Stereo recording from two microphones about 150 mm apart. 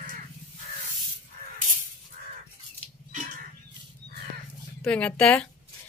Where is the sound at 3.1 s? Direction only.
55° right (ahead or behind).